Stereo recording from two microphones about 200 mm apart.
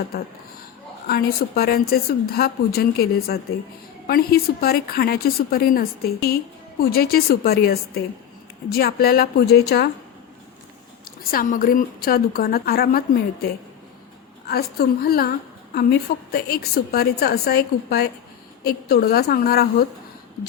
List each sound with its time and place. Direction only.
1.0 s a woman's voice: 50° left (ahead or behind)
11.0 s a woman's voice: 45° left (ahead or behind)
14.4 s a woman's voice: 50° left (ahead or behind)